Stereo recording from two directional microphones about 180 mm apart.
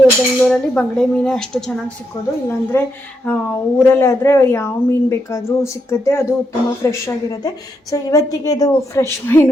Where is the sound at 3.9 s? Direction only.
15° left (ahead or behind).